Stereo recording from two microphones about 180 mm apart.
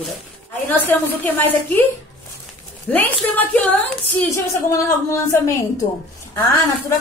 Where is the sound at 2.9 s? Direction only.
10° left (ahead or behind).